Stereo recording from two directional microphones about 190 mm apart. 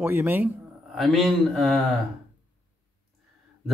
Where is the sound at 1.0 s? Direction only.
Centre (ahead or behind).